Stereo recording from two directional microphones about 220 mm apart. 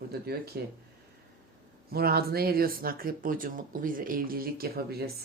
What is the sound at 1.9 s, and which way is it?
Speech, 45° right (ahead or behind).